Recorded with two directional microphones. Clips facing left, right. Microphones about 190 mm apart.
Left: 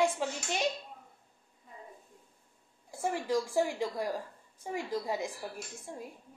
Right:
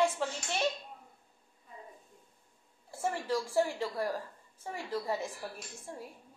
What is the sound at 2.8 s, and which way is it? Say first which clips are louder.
A woman's voice: left 1 dB; 15° left (ahead or behind).